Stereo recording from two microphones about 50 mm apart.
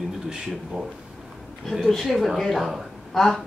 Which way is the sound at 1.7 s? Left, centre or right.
Centre.